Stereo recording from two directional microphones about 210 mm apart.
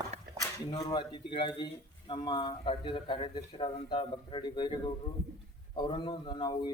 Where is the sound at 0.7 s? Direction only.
25° left (ahead or behind).